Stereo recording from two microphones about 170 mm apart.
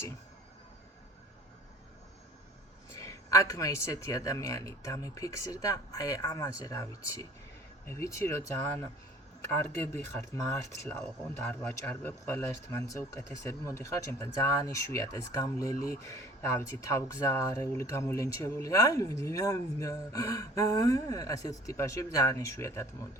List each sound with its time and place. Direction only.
3.0 s speech: 20° left (ahead or behind)